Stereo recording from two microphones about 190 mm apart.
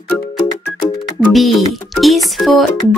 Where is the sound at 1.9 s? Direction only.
Centre (ahead or behind).